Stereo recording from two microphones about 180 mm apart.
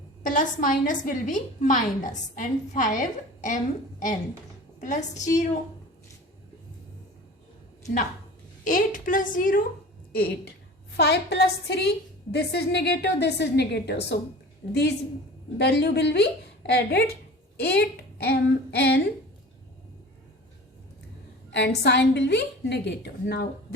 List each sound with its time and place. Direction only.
0.2 s a woman's voice: 45° left (ahead or behind)
4.8 s a woman's voice: 45° left (ahead or behind)
8.6 s a woman's voice: 45° left (ahead or behind)
10.1 s a woman's voice: 60° left (ahead or behind)
21.5 s a woman's voice: 65° left (ahead or behind)